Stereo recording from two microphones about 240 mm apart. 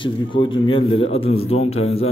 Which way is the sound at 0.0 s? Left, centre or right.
Left.